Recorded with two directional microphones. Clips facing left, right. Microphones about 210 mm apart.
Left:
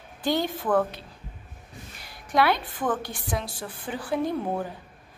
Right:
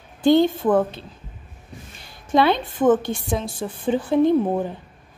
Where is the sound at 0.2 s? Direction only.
25° right (ahead or behind).